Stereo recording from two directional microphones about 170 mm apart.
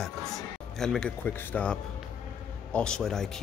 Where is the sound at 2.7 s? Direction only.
5° left (ahead or behind).